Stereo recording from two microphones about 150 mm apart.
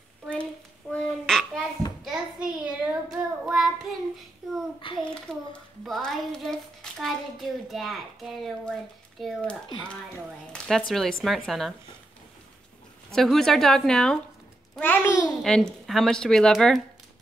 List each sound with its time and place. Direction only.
0.3 s child singing: 5° left (ahead or behind)
2.0 s a child's voice: 5° right (ahead or behind)
4.8 s a child's voice: 35° left (ahead or behind)
5.3 s a child's voice: 5° left (ahead or behind)
10.9 s a child's voice: 5° left (ahead or behind)
13.1 s a child's voice: centre (ahead or behind)
14.8 s a child's voice: 15° left (ahead or behind)
15.4 s a child's voice: 5° left (ahead or behind)